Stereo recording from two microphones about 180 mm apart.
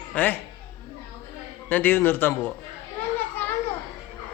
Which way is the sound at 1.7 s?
10° left (ahead or behind).